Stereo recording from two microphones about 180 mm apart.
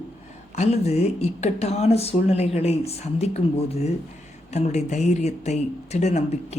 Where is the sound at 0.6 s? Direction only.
35° left (ahead or behind).